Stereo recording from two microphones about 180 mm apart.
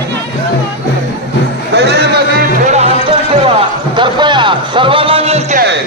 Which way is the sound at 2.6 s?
40° right (ahead or behind).